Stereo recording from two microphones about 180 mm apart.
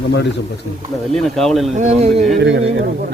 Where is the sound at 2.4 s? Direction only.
90° right.